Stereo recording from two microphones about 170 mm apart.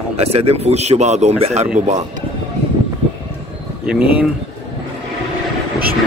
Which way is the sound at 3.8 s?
5° right (ahead or behind).